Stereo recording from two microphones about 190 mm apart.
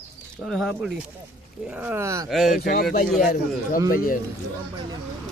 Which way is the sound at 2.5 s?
45° left (ahead or behind).